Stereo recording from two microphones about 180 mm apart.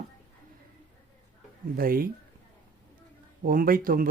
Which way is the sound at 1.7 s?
55° right (ahead or behind).